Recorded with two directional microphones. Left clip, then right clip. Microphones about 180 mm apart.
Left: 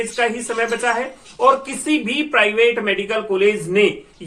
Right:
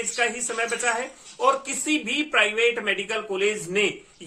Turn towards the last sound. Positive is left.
turn(degrees=-15)  # may be behind; listen again after turning